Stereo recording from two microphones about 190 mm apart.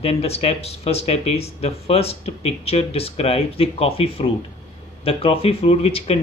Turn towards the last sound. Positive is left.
turn(degrees=30)  # may be behind; listen again after turning